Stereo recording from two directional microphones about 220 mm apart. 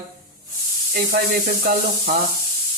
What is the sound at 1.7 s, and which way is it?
Speech, 40° right (ahead or behind).